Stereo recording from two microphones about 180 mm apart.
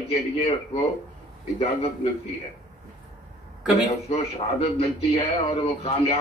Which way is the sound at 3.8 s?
35° left (ahead or behind).